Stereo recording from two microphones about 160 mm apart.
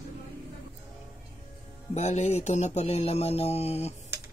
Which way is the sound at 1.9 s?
45° left (ahead or behind).